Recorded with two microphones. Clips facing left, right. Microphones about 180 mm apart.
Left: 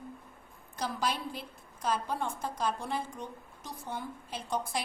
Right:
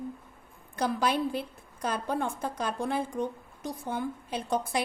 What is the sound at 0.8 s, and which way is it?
A woman's voice, 60° right (ahead or behind).